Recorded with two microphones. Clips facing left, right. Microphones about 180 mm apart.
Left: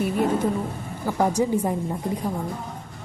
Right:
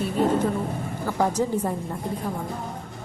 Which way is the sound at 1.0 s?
10° left (ahead or behind).